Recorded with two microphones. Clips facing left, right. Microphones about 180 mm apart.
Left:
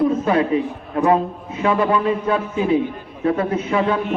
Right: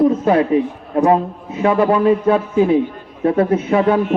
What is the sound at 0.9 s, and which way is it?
Speech, 30° right (ahead or behind).